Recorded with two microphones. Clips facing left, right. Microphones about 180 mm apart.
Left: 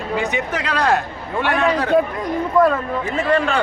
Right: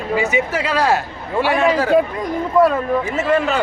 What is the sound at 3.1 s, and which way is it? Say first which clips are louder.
Speech: left 2 dB; 5° right (ahead or behind).